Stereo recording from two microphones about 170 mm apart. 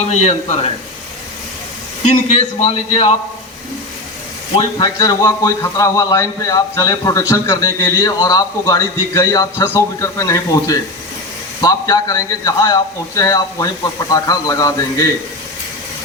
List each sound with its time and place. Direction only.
0.2 s a man's voice: 35° left (ahead or behind)
2.0 s a man's voice: 35° left (ahead or behind)
4.5 s a man's voice: 25° left (ahead or behind)